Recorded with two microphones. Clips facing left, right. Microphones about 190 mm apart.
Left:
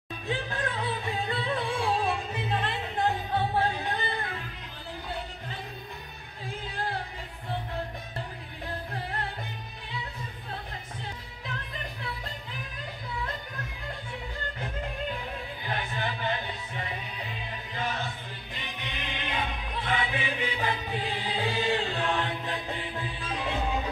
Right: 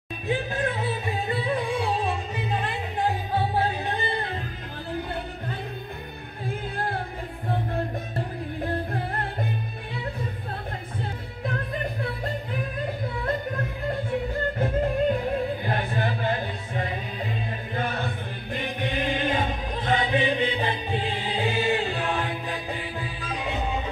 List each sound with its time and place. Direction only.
0.3 s music: 20° right (ahead or behind)
2.0 s music: 5° right (ahead or behind); by 4.4 s 30° right (ahead or behind)
8.6 s music: 50° right (ahead or behind)
11.4 s music: 50° right (ahead or behind)
16.1 s music: 35° right (ahead or behind); by 23.8 s 5° right (ahead or behind)